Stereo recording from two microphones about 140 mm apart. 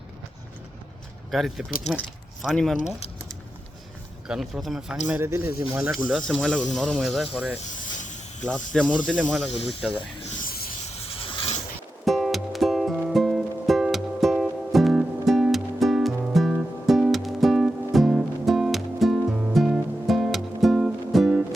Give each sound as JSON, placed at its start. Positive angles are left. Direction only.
{"t": 1.3, "sound": "speech", "side_deg": 0}
{"t": 2.7, "sound": "speech", "side_deg": 55}
{"t": 4.3, "sound": "speech", "side_deg": 0}
{"t": 5.0, "sound": "speech", "side_deg": -15}
{"t": 6.1, "sound": "speech", "side_deg": 5}
{"t": 7.7, "sound": "snake", "side_deg": 60}
{"t": 8.4, "sound": "speech", "side_deg": 5}
{"t": 10.4, "sound": "a sound", "side_deg": 90}
{"t": 10.8, "sound": "a sound", "side_deg": 45}
{"t": 12.0, "sound": "music", "side_deg": 0}